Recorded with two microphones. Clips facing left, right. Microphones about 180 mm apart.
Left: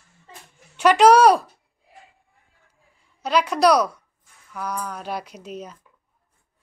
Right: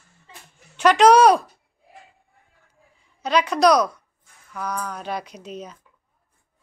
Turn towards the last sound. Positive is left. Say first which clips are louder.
# even
turn(degrees=5)  # may be behind; listen again after turning